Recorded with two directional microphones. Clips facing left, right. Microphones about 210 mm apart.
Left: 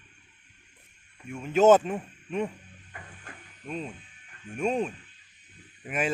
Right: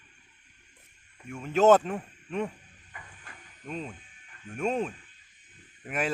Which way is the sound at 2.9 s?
45° left (ahead or behind).